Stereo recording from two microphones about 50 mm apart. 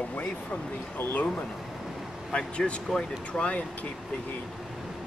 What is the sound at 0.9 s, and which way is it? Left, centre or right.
Speech, left.